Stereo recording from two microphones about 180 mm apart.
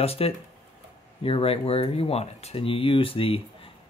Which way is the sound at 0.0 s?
35° left (ahead or behind).